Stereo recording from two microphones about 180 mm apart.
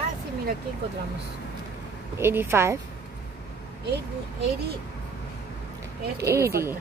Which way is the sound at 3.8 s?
70° right (ahead or behind).